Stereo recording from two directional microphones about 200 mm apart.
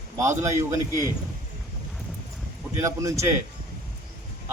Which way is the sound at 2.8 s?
15° right (ahead or behind).